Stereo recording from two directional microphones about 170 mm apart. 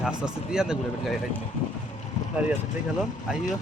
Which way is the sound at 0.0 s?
5° right (ahead or behind).